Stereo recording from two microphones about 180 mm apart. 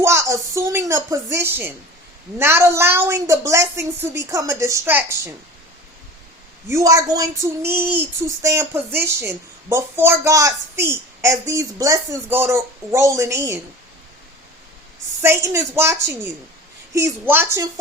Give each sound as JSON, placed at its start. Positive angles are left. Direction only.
{"t": 0.0, "sound": "speech", "side_deg": -15}
{"t": 6.7, "sound": "speech", "side_deg": -15}
{"t": 15.2, "sound": "speech", "side_deg": -15}